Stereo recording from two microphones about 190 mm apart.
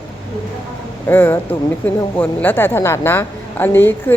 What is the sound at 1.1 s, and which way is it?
A woman's voice, 10° left (ahead or behind).